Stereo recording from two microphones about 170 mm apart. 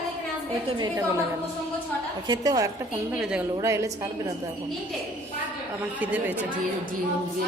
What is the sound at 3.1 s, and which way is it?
Speech, 5° right (ahead or behind).